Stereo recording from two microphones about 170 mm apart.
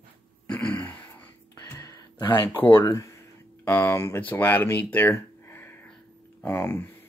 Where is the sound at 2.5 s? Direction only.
10° left (ahead or behind).